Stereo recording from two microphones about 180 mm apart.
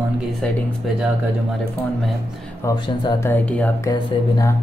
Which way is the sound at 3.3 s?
10° left (ahead or behind).